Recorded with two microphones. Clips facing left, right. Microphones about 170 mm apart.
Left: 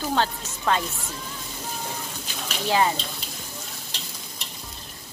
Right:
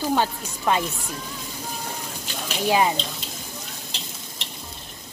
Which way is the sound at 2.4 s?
15° right (ahead or behind).